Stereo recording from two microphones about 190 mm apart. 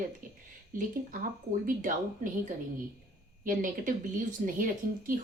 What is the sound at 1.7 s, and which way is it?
Speech, 45° right (ahead or behind).